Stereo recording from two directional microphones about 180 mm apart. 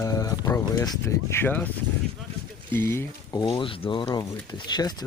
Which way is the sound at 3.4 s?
30° left (ahead or behind).